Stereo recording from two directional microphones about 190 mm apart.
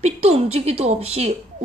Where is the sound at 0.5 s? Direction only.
35° right (ahead or behind).